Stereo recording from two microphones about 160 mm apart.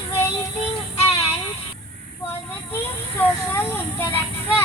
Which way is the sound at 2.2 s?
15° left (ahead or behind).